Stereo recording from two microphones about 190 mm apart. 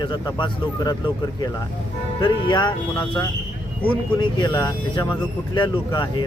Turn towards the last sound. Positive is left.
turn(degrees=25)  # may be behind; listen again after turning